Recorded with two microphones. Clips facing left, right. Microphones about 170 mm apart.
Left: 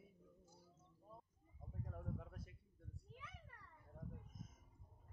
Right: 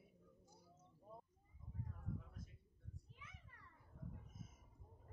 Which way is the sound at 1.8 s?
70° left (ahead or behind).